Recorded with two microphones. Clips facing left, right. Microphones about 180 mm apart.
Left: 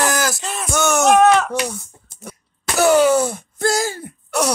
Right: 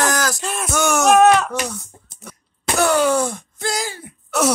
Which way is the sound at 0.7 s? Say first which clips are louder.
Left 1 dB; 5° right (ahead or behind).